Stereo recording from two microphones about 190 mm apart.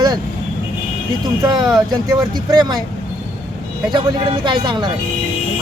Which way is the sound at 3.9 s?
25° right (ahead or behind).